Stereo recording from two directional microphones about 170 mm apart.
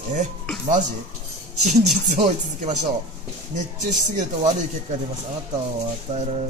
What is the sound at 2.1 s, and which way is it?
Speech, 45° right (ahead or behind).